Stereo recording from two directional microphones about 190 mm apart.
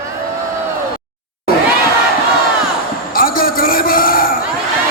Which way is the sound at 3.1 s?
50° left (ahead or behind).